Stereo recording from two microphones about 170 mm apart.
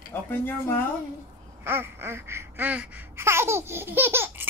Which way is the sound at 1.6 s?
15° right (ahead or behind).